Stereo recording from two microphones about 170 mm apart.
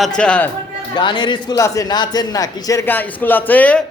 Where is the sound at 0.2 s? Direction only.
5° left (ahead or behind).